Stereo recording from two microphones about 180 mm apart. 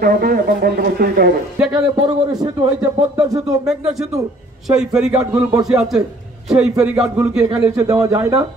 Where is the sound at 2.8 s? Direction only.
20° right (ahead or behind).